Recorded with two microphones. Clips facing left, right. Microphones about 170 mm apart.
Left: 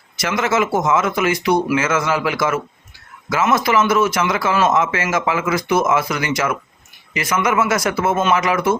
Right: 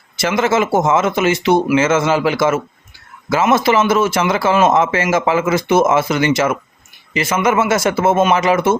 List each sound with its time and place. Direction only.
0.2 s a man's voice: 30° right (ahead or behind)